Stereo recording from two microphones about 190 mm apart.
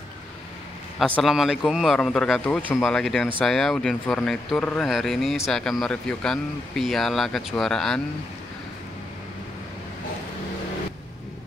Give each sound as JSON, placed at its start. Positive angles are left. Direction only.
{"t": 0.9, "sound": "speech", "side_deg": 5}